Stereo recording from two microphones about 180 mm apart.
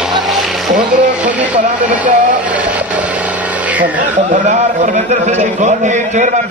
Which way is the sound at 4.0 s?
45° right (ahead or behind).